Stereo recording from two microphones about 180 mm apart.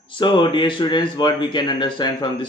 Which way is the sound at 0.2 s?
25° left (ahead or behind).